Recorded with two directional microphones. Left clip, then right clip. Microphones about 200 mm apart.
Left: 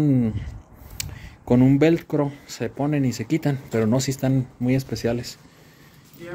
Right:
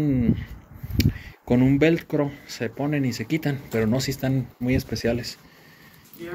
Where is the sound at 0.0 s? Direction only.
25° left (ahead or behind).